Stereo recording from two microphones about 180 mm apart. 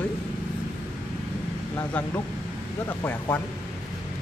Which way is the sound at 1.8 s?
15° left (ahead or behind).